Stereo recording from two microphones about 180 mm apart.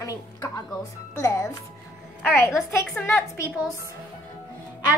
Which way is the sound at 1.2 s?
15° left (ahead or behind).